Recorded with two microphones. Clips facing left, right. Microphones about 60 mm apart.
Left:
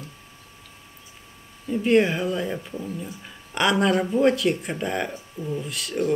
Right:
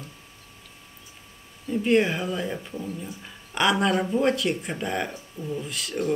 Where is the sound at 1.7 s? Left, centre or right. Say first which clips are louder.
Left 2 dB; centre.